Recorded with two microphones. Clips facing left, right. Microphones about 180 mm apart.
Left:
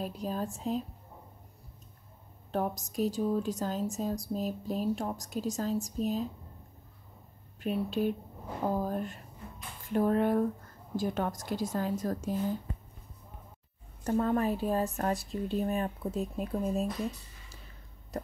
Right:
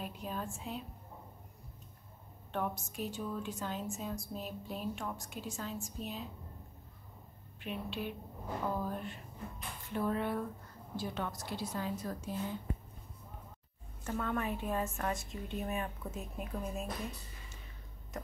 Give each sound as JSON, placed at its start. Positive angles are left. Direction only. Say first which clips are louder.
{"t": 0.0, "sound": "speech", "louder": "left 6 dB", "side_deg": 35}
{"t": 2.5, "sound": "speech", "louder": "left 6 dB", "side_deg": 40}
{"t": 7.6, "sound": "a woman's voice", "louder": "left 10 dB", "side_deg": 40}
{"t": 14.0, "sound": "speech", "louder": "left 8 dB", "side_deg": 35}
{"t": 18.1, "sound": "a sound", "louder": "left 6 dB", "side_deg": 35}